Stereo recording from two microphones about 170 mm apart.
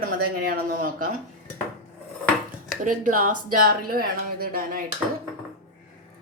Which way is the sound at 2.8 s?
50° right (ahead or behind).